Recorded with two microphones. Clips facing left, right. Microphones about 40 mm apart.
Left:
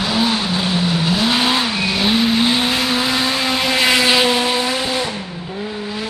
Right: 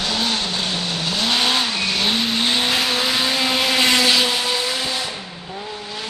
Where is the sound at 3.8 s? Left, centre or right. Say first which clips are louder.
Left 4 dB; centre.